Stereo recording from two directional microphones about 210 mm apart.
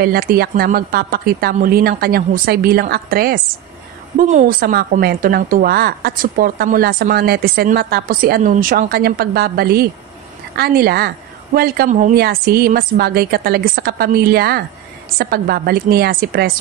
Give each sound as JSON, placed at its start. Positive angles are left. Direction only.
{"t": 0.0, "sound": "a woman's voice", "side_deg": -45}